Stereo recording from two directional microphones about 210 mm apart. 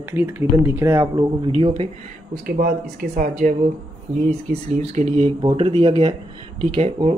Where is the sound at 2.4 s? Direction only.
45° right (ahead or behind).